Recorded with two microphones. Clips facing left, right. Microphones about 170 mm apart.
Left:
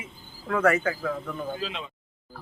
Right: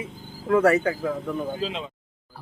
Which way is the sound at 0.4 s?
35° right (ahead or behind).